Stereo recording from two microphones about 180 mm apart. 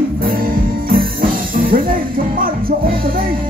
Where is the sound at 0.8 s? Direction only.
50° right (ahead or behind).